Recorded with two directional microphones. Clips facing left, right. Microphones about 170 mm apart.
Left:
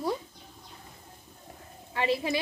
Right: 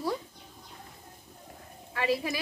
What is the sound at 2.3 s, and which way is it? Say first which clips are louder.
Speech: left 4 dB; 25° left (ahead or behind).